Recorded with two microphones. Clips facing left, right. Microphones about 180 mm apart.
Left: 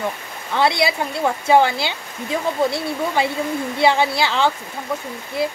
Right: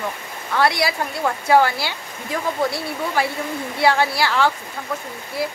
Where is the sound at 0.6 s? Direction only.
20° left (ahead or behind).